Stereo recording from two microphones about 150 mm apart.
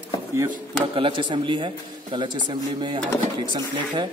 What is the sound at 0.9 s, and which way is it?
A man's voice, 35° right (ahead or behind).